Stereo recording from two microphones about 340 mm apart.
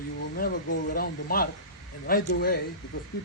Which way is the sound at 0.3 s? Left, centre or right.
Left.